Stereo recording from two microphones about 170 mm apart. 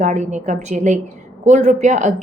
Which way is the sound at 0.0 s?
45° right (ahead or behind).